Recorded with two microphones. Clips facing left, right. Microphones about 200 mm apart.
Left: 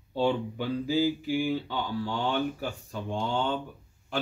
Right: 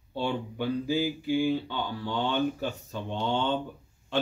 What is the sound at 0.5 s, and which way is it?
A man's voice, 15° right (ahead or behind).